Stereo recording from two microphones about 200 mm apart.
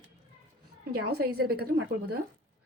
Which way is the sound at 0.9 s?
50° right (ahead or behind).